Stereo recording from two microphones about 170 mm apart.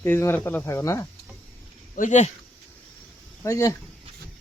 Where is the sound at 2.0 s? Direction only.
45° left (ahead or behind).